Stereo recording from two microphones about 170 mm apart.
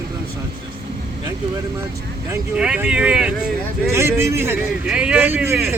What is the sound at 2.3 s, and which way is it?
Speech, 5° right (ahead or behind).